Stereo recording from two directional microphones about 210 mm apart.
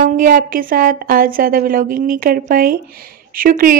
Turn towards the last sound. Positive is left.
turn(degrees=-40)  # may be behind; listen again after turning